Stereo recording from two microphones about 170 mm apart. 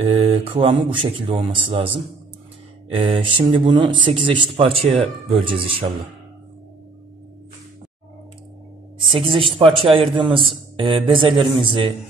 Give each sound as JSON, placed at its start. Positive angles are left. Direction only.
{"t": 0.0, "sound": "speech", "side_deg": -35}
{"t": 2.9, "sound": "speech", "side_deg": -30}
{"t": 9.0, "sound": "a man's voice", "side_deg": -30}